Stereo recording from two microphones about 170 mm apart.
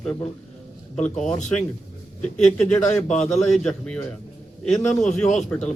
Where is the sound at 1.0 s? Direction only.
45° left (ahead or behind).